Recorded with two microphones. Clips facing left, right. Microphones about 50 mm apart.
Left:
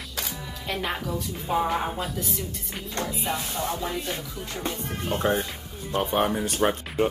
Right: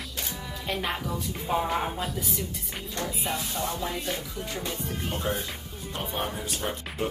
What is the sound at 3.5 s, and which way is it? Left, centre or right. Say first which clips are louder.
Music: left 2 dB; left.